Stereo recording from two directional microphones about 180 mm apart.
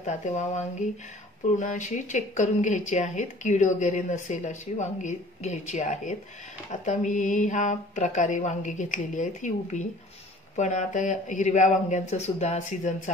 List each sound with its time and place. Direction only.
0.0 s speech: 40° left (ahead or behind)